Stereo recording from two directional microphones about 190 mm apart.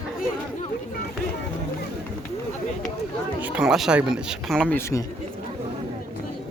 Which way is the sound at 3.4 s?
5° right (ahead or behind).